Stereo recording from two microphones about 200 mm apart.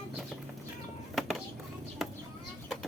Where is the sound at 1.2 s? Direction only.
Centre (ahead or behind).